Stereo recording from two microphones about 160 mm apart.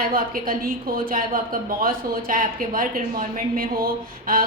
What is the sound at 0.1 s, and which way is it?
A woman's voice, 65° right (ahead or behind).